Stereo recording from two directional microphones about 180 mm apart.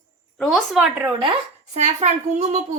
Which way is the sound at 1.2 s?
30° right (ahead or behind).